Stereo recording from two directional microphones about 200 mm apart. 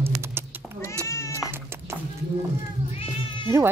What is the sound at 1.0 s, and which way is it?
Cat, 15° left (ahead or behind).